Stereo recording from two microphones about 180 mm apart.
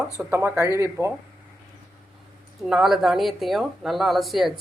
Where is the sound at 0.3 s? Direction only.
15° right (ahead or behind).